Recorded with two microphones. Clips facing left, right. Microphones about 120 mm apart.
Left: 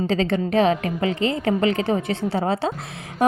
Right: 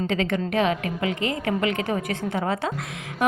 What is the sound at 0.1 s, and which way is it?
A woman's voice, 30° left (ahead or behind).